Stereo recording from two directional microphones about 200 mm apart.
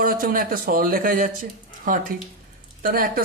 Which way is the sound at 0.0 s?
45° right (ahead or behind).